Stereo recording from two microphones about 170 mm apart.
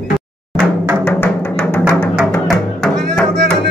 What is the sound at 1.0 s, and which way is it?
Music, 10° left (ahead or behind).